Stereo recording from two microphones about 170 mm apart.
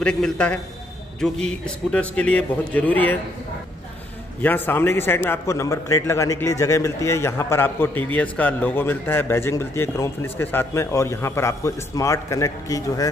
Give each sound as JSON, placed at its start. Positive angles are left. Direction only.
{"t": 0.0, "sound": "a man's voice", "side_deg": 5}
{"t": 4.4, "sound": "a man's voice", "side_deg": 10}